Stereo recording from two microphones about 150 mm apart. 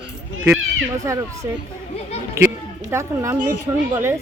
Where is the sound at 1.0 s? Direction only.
20° right (ahead or behind).